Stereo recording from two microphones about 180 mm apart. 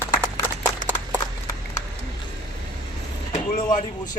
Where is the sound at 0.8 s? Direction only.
45° left (ahead or behind).